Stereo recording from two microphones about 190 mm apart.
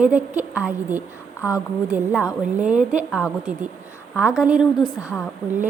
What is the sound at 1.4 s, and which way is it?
Speech, 15° left (ahead or behind).